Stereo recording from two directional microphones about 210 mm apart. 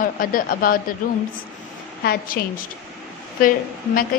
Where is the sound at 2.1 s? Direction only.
40° left (ahead or behind).